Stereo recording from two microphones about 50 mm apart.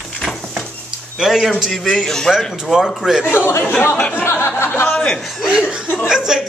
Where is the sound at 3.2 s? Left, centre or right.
Left.